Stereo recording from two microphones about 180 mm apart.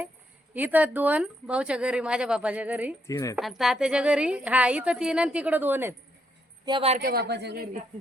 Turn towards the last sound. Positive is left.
turn(degrees=-60)  # may be behind; listen again after turning